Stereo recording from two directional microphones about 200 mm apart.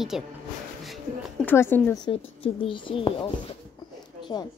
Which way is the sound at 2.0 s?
25° left (ahead or behind).